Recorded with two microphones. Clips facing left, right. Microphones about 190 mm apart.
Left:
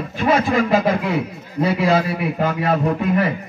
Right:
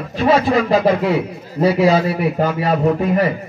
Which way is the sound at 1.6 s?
40° right (ahead or behind).